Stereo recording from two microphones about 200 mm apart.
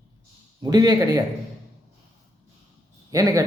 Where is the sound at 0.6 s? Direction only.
20° right (ahead or behind).